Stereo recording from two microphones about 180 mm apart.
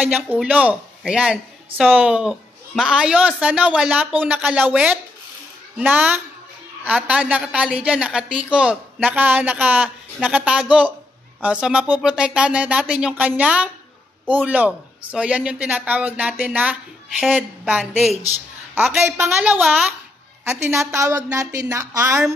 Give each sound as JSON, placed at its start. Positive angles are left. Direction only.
{"t": 0.0, "sound": "a woman's voice", "side_deg": -5}